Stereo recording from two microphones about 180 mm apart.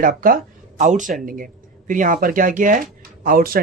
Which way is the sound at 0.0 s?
50° right (ahead or behind).